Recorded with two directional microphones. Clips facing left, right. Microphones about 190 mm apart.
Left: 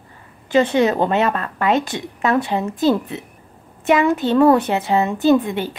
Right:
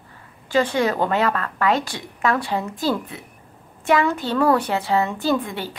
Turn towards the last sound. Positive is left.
turn(degrees=20)  # may be behind; listen again after turning